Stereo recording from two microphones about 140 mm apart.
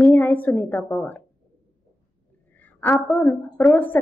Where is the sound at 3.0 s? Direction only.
10° left (ahead or behind).